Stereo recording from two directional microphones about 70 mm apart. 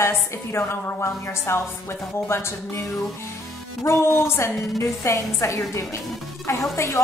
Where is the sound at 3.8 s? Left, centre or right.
Left.